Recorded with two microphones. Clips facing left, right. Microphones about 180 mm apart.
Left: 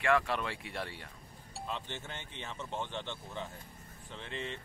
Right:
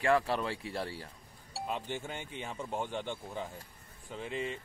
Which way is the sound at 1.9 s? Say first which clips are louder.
Right 5 dB; 10° right (ahead or behind).